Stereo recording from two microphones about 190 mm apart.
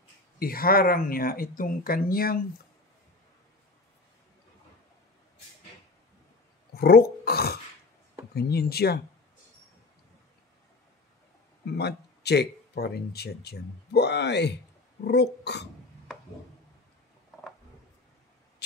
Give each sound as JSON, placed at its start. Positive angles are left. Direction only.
{"t": 0.4, "sound": "speech", "side_deg": 50}
{"t": 6.7, "sound": "dog", "side_deg": 55}
{"t": 8.4, "sound": "speech", "side_deg": 55}
{"t": 11.6, "sound": "speech", "side_deg": 60}